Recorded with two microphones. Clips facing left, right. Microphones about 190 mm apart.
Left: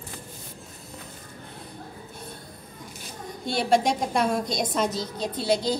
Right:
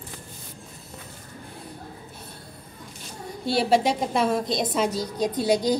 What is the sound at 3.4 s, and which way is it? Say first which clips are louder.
A woman's voice: right 1 dB; 5° right (ahead or behind).